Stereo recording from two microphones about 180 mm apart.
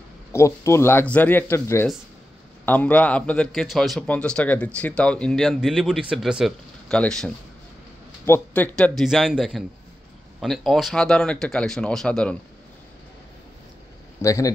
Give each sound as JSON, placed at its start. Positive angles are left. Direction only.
{"t": 0.3, "sound": "a man's voice", "side_deg": 15}
{"t": 14.2, "sound": "speech", "side_deg": 15}